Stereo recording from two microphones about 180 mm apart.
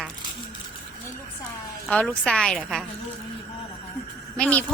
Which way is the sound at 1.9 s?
5° left (ahead or behind).